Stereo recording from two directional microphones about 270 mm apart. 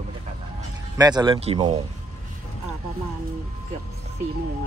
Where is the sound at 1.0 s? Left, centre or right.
Centre.